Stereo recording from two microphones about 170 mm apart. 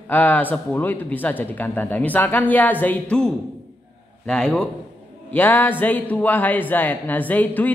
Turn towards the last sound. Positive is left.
turn(degrees=10)  # may be behind; listen again after turning